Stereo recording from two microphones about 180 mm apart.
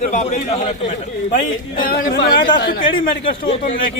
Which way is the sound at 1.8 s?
55° left (ahead or behind).